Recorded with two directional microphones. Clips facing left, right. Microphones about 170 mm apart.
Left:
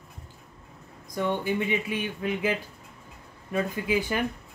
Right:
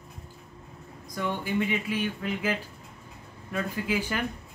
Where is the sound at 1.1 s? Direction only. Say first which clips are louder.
Left 3 dB; 20° left (ahead or behind).